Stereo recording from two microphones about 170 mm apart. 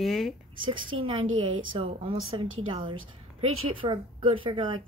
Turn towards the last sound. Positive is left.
turn(degrees=-30)  # may be behind; listen again after turning